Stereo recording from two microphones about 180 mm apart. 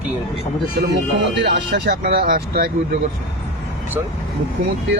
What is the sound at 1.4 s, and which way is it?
Speech, 70° right (ahead or behind).